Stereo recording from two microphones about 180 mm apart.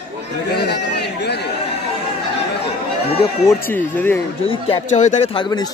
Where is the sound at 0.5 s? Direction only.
65° left (ahead or behind).